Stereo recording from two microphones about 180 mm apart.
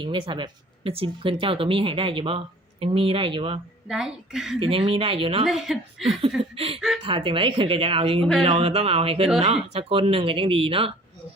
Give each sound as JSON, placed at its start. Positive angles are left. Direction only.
{"t": 0.0, "sound": "speech", "side_deg": -25}
{"t": 3.8, "sound": "speech", "side_deg": -5}
{"t": 4.6, "sound": "speech", "side_deg": -30}
{"t": 5.5, "sound": "speech", "side_deg": 0}
{"t": 7.0, "sound": "speech", "side_deg": -30}
{"t": 8.2, "sound": "speech", "side_deg": 0}
{"t": 8.4, "sound": "speech", "side_deg": -35}